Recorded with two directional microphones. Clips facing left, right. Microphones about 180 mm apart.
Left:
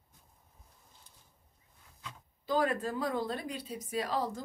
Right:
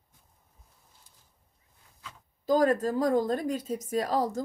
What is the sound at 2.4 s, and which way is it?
Speech, 40° right (ahead or behind).